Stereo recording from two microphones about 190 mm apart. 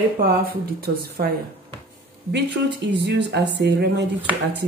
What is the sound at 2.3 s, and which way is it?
Speech, 60° right (ahead or behind).